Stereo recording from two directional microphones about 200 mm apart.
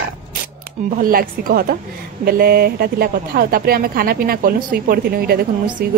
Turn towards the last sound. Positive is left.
turn(degrees=-50)  # may be behind; listen again after turning